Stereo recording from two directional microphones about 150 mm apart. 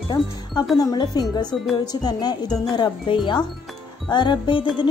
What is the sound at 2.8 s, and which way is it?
A woman's voice, 30° left (ahead or behind).